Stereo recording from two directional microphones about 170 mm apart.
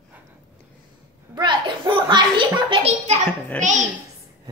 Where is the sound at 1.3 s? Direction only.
25° right (ahead or behind).